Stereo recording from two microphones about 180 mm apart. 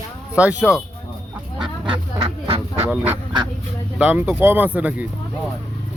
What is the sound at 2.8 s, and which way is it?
Speech, 10° right (ahead or behind).